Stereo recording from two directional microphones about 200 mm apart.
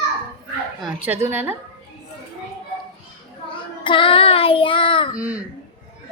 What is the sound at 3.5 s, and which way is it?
Child singing, 25° left (ahead or behind).